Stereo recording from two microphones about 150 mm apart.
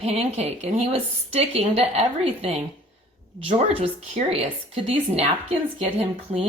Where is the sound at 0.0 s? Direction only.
40° right (ahead or behind).